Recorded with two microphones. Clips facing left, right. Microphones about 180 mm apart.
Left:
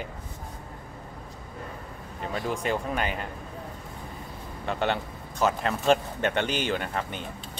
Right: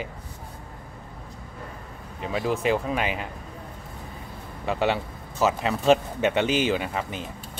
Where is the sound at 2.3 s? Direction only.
5° right (ahead or behind).